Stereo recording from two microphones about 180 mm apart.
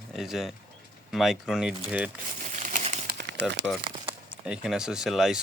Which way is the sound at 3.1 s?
70° right (ahead or behind).